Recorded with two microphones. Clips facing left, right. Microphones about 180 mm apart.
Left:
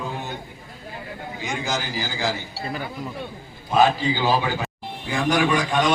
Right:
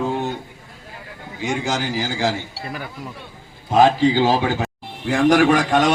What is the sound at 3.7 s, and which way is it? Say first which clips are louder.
A man's voice: right 5 dB; 90° right.